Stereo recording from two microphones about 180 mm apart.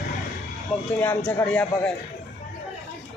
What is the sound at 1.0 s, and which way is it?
Speech, 10° left (ahead or behind).